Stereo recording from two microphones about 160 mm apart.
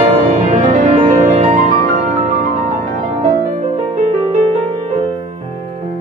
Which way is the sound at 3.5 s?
45° right (ahead or behind).